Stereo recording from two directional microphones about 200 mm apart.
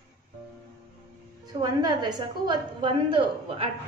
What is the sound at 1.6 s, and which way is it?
A woman's voice, 20° right (ahead or behind).